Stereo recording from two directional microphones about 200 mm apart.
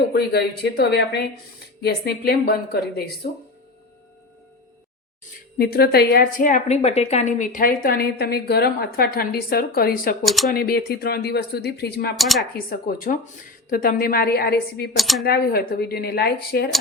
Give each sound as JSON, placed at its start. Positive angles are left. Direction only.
{"t": 0.1, "sound": "a woman's voice", "side_deg": 50}
{"t": 5.5, "sound": "a woman's voice", "side_deg": 50}
{"t": 10.2, "sound": "speech", "side_deg": 0}
{"t": 10.5, "sound": "a woman's voice", "side_deg": 50}
{"t": 12.1, "sound": "speech", "side_deg": 0}
{"t": 12.5, "sound": "a woman's voice", "side_deg": 45}
{"t": 14.9, "sound": "speech", "side_deg": 0}
{"t": 15.2, "sound": "a woman's voice", "side_deg": 50}